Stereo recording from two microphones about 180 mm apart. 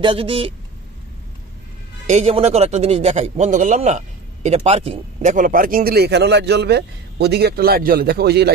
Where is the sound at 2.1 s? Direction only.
35° right (ahead or behind).